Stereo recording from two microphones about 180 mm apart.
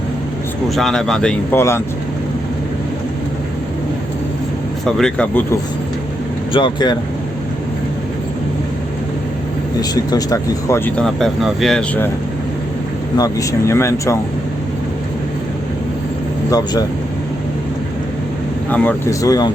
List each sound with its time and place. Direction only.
0.7 s speech: centre (ahead or behind)
4.9 s speech: 5° left (ahead or behind)
6.5 s speech: 25° left (ahead or behind)
9.9 s speech: 20° left (ahead or behind); by 12.0 s 5° left (ahead or behind)
13.1 s speech: 20° left (ahead or behind)
16.5 s speech: 20° left (ahead or behind)
18.7 s speech: 10° left (ahead or behind)